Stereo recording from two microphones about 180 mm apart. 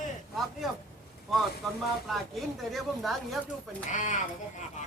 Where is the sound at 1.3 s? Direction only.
Centre (ahead or behind).